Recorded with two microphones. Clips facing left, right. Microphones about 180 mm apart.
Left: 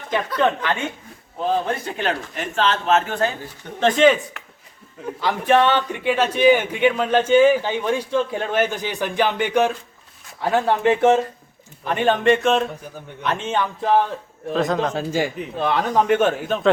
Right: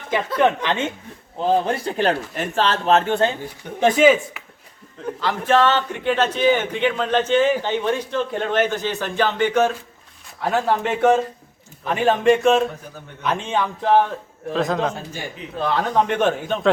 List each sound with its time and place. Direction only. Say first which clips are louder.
0.3 s speech: right 2 dB; 20° right (ahead or behind)
1.6 s speech: right 3 dB; 35° right (ahead or behind)
3.4 s speech: right 1 dB; 10° right (ahead or behind)
5.2 s speech: left 1 dB; 15° left (ahead or behind)
10.4 s speech: left 2 dB; centre (ahead or behind)
14.9 s a man's voice: left 10 dB; 90° left
15.5 s speech: even; 5° left (ahead or behind)